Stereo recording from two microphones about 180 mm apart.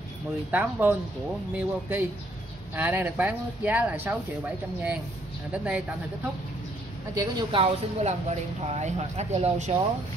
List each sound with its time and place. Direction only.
0.5 s speech: 10° right (ahead or behind)
5.5 s speech: 5° right (ahead or behind)
7.2 s speech: 25° right (ahead or behind)